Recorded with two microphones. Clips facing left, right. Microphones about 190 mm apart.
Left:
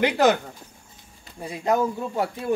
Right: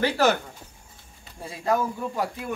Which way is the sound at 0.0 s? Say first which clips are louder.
Left 3 dB; 15° left (ahead or behind).